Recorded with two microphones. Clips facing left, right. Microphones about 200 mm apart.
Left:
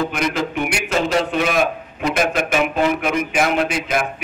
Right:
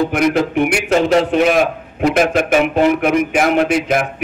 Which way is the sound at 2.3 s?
55° right (ahead or behind).